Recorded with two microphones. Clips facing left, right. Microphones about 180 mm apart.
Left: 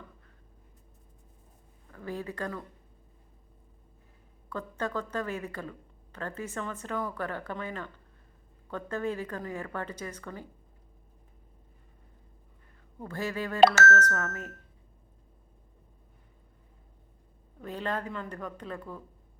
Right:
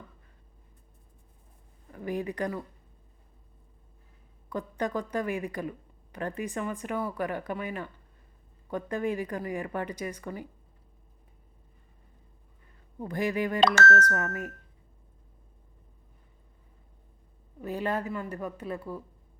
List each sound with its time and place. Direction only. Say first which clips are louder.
1.9 s a woman's voice: right 4 dB; 15° right (ahead or behind)
4.4 s a woman's voice: right 3 dB; 15° right (ahead or behind)
13.0 s a woman's voice: right 5 dB; 15° right (ahead or behind)
17.6 s a woman's voice: right 3 dB; 10° right (ahead or behind)